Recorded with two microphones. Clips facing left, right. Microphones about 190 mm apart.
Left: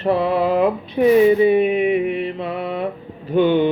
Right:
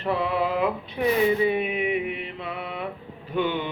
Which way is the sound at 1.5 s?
35° left (ahead or behind).